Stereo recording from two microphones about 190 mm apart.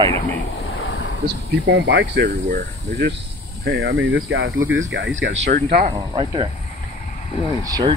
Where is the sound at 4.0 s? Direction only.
85° right.